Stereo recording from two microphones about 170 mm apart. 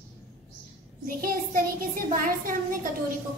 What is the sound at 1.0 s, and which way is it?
A child's voice, 55° right (ahead or behind).